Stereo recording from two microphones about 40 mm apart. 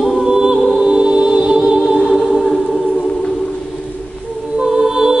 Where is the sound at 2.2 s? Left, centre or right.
Centre.